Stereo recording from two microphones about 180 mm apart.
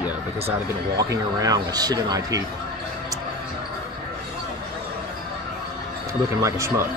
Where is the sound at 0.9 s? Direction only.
20° right (ahead or behind).